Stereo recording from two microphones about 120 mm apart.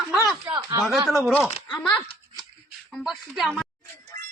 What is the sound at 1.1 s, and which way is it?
Speech, centre (ahead or behind).